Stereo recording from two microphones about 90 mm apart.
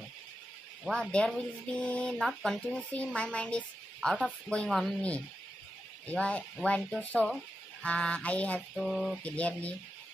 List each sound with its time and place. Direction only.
0.8 s speech: 5° left (ahead or behind)
6.0 s speech: 15° left (ahead or behind)
8.7 s speech: centre (ahead or behind)
9.2 s speech: 15° left (ahead or behind)